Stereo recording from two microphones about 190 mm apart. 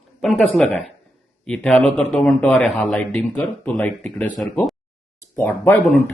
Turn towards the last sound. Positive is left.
turn(degrees=10)  # may be behind; listen again after turning